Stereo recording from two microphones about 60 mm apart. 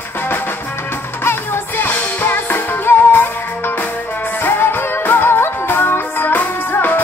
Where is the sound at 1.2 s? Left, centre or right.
Left.